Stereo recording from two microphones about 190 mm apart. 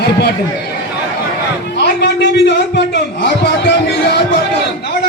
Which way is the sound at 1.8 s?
60° left (ahead or behind).